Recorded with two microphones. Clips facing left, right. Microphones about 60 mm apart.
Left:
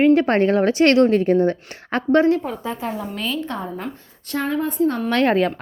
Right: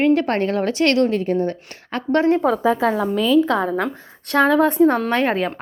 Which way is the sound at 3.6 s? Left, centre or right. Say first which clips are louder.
Right 8 dB; right.